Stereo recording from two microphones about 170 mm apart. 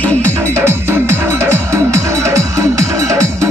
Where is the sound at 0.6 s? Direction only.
15° right (ahead or behind).